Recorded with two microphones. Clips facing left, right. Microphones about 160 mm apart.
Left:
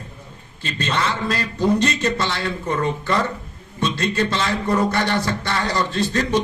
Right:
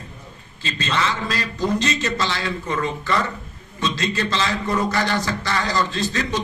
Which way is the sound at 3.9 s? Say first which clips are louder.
Left 3 dB; 55° left (ahead or behind).